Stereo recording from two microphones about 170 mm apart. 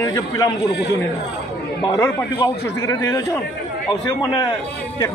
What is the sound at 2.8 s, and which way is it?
Speech, 15° left (ahead or behind).